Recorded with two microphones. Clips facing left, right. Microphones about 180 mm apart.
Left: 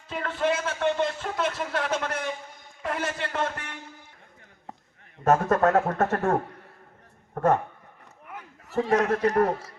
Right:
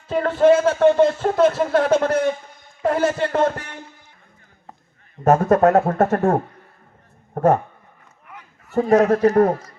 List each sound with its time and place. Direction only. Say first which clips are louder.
0.1 s speech: right 12 dB; 40° right (ahead or behind)
5.2 s speech: right 6 dB; 35° right (ahead or behind)
8.7 s speech: right 8 dB; 35° right (ahead or behind)